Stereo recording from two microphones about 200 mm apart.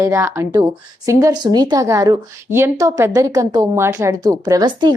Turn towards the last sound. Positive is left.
turn(degrees=-20)  # may be behind; listen again after turning